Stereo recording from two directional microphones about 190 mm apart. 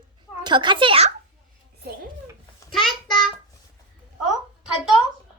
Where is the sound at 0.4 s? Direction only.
25° right (ahead or behind).